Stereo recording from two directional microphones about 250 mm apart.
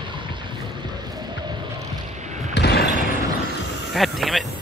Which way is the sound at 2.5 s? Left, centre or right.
Left.